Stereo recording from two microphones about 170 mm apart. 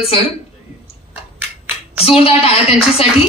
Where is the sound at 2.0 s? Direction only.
35° left (ahead or behind).